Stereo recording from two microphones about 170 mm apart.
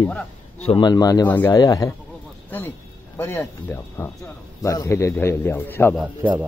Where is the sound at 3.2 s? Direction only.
15° left (ahead or behind).